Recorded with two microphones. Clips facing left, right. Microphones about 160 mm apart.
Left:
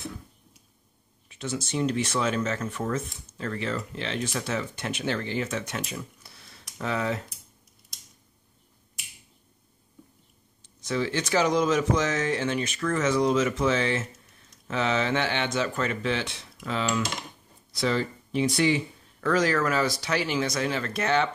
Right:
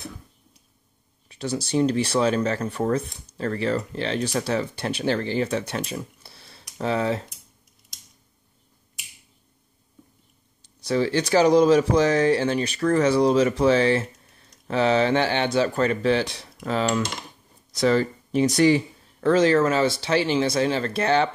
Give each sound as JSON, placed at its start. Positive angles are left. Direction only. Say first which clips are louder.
{"t": 1.3, "sound": "speech", "louder": "right 6 dB", "side_deg": -35}
{"t": 10.6, "sound": "speech", "louder": "right 5 dB", "side_deg": -35}
{"t": 19.2, "sound": "speech", "louder": "right 6 dB", "side_deg": -25}